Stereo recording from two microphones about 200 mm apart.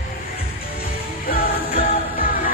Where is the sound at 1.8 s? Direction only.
45° left (ahead or behind).